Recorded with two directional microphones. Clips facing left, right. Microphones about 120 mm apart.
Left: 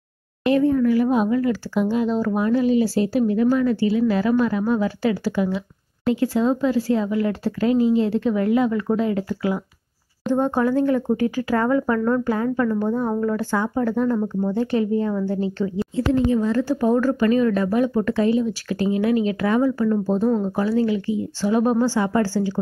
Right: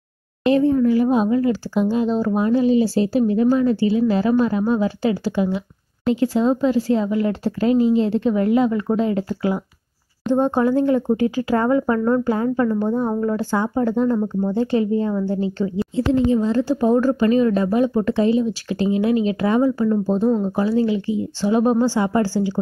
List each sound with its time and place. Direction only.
0.4 s speech: 25° right (ahead or behind)